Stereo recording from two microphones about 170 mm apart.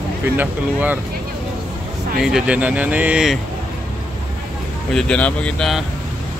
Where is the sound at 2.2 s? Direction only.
5° right (ahead or behind).